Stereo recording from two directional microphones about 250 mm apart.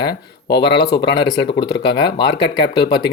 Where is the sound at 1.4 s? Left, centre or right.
Left.